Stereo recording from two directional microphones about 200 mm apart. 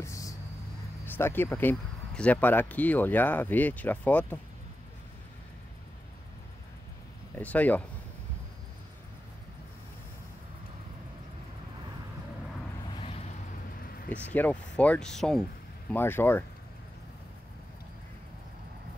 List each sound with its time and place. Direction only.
0.0 s vehicle: 15° left (ahead or behind)
1.0 s speech: 10° left (ahead or behind)
7.3 s speech: 10° left (ahead or behind)
12.9 s vehicle: 30° left (ahead or behind)
14.3 s speech: 5° left (ahead or behind)